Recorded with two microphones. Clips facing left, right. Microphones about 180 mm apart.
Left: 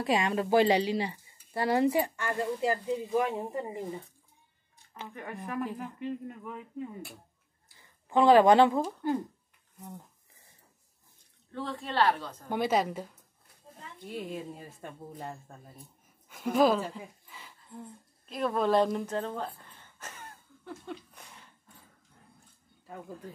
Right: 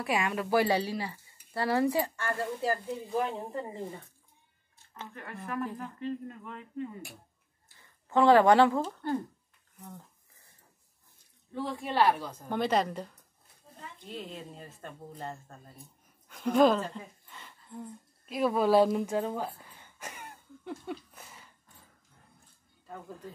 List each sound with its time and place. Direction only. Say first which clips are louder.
0.0 s speech: left 3 dB; 25° left (ahead or behind)
4.9 s speech: left 3 dB; 15° left (ahead or behind)
8.1 s speech: left 1 dB; 15° left (ahead or behind)
11.5 s speech: right 1 dB; 10° right (ahead or behind)
12.4 s a woman's voice: even; 5° left (ahead or behind)